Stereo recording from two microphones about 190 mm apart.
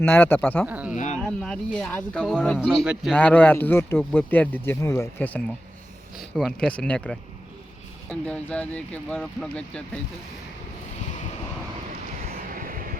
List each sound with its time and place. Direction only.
0.0 s speech: 10° left (ahead or behind)
0.6 s speech: 5° right (ahead or behind)
0.9 s a sound: 40° left (ahead or behind)
1.2 s speech: 5° left (ahead or behind)
3.2 s speech: 10° left (ahead or behind)
12.4 s vehicle: 50° right (ahead or behind)